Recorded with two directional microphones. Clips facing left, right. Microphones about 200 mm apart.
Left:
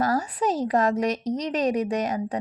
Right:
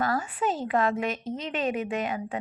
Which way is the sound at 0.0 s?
40° left (ahead or behind).